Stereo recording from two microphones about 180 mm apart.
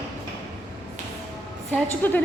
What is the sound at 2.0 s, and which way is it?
Speech, 10° left (ahead or behind).